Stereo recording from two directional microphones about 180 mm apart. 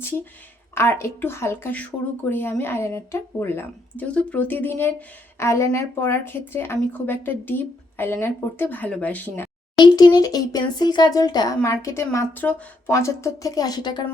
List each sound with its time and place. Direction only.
0.7 s a woman's voice: 15° left (ahead or behind)
9.7 s speech: 25° left (ahead or behind)